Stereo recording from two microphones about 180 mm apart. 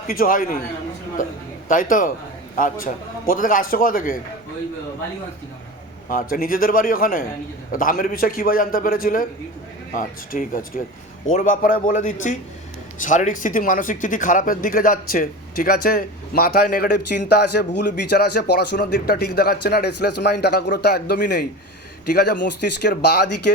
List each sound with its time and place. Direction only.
0.1 s a man's voice: 50° left (ahead or behind)
6.1 s a man's voice: 50° left (ahead or behind); by 23.3 s 70° left (ahead or behind)